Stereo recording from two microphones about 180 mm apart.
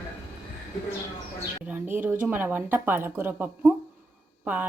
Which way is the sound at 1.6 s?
10° right (ahead or behind).